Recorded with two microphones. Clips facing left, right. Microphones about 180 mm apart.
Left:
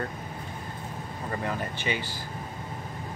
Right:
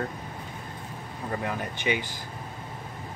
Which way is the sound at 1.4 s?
15° right (ahead or behind).